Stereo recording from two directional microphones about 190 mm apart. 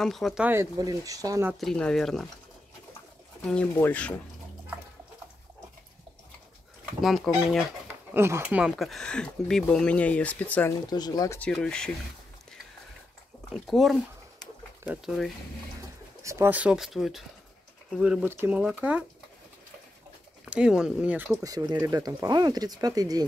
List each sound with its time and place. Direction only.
0.0 s speech: centre (ahead or behind); by 1.5 s 15° right (ahead or behind)
1.5 s speech: centre (ahead or behind)
3.4 s speech: 10° left (ahead or behind)
7.0 s speech: centre (ahead or behind)
8.1 s speech: 15° right (ahead or behind); by 11.3 s 20° left (ahead or behind)
11.3 s speech: 5° left (ahead or behind)
13.7 s speech: centre (ahead or behind)
16.2 s speech: 15° right (ahead or behind)
20.4 s speech: 5° right (ahead or behind)
21.4 s speech: 20° right (ahead or behind)